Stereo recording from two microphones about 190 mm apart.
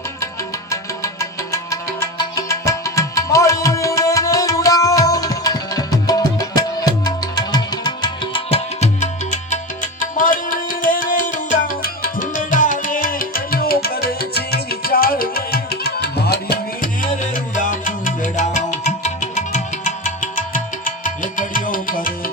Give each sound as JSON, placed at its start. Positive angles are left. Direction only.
{"t": 0.7, "sound": "music", "side_deg": 15}